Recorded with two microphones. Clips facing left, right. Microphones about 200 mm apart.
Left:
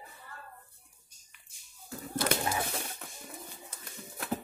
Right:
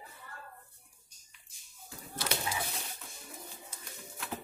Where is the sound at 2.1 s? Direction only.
55° left (ahead or behind).